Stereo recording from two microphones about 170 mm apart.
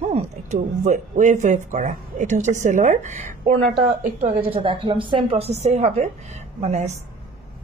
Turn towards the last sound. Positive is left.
turn(degrees=-40)  # may be behind; listen again after turning